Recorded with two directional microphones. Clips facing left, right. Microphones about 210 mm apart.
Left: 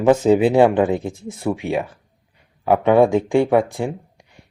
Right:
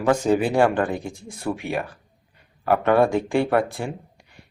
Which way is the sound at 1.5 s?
20° left (ahead or behind).